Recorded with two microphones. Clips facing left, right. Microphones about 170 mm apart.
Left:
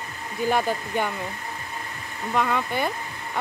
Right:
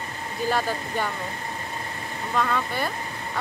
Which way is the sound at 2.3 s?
15° left (ahead or behind).